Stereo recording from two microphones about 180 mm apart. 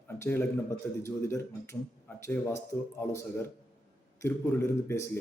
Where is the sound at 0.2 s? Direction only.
10° left (ahead or behind).